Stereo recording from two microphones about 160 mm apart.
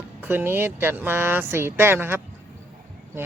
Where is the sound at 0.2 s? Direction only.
15° right (ahead or behind).